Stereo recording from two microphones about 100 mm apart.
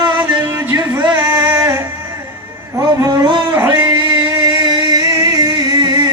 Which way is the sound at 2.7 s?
40° right (ahead or behind).